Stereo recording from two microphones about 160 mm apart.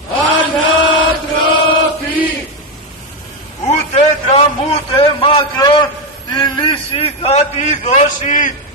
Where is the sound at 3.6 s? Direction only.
40° left (ahead or behind).